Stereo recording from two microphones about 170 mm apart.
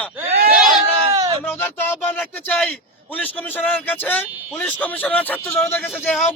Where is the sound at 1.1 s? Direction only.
20° right (ahead or behind).